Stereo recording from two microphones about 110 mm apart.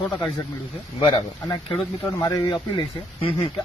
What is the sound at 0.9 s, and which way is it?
Speech, 45° left (ahead or behind).